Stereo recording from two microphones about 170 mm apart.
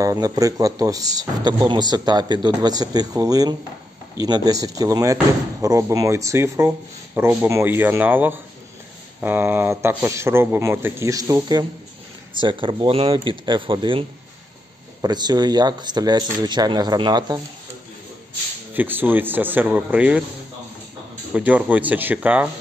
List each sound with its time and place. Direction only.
0.0 s speech: 20° right (ahead or behind)
18.7 s speech: 10° right (ahead or behind)
21.3 s speech: 5° right (ahead or behind)